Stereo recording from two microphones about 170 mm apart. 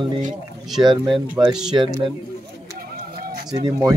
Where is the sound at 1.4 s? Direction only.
20° right (ahead or behind).